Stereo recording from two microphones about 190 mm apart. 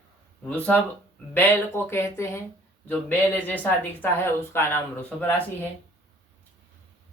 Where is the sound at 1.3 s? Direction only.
10° left (ahead or behind).